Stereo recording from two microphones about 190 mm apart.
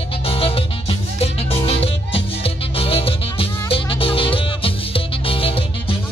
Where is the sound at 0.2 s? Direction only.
30° left (ahead or behind).